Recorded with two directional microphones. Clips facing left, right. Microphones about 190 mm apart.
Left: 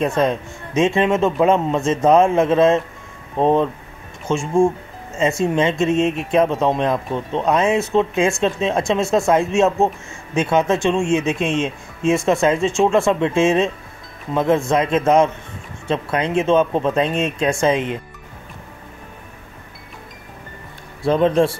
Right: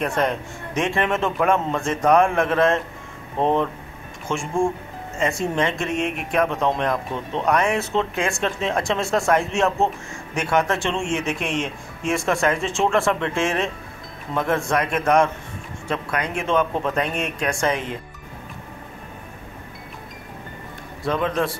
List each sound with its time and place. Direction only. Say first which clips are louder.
0.0 s speech: left 4 dB; 20° left (ahead or behind)
21.0 s speech: left 7 dB; 30° left (ahead or behind)